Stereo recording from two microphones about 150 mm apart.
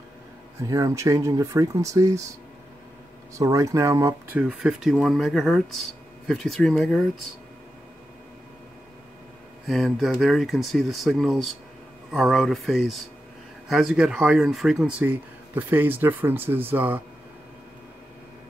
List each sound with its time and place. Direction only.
0.6 s speech: 20° right (ahead or behind)
3.3 s speech: 20° right (ahead or behind); by 7.1 s centre (ahead or behind)
9.7 s speech: centre (ahead or behind)